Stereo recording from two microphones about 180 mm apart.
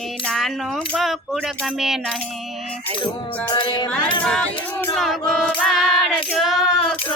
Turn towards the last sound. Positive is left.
turn(degrees=0)  # may be behind; listen again after turning